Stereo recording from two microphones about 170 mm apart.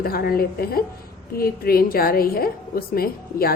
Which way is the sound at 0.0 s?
60° left (ahead or behind).